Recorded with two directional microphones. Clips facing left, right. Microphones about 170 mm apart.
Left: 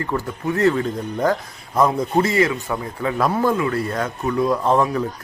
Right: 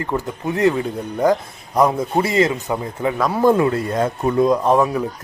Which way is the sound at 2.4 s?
20° right (ahead or behind).